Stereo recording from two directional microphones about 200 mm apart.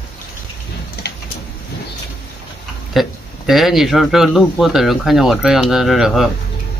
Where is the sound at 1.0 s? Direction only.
55° left (ahead or behind).